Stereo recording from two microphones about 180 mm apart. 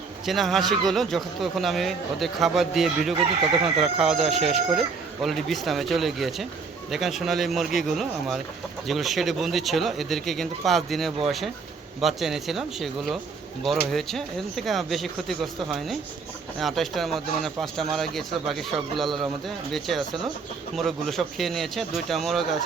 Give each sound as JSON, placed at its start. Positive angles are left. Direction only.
{"t": 0.3, "sound": "speech", "side_deg": 0}
{"t": 3.4, "sound": "speech", "side_deg": -30}
{"t": 3.9, "sound": "speech", "side_deg": -5}